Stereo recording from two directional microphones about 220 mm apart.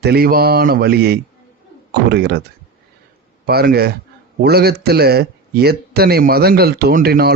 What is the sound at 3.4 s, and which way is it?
Speech, 45° right (ahead or behind).